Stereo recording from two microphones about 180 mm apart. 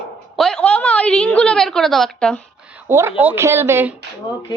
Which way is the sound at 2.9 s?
15° right (ahead or behind).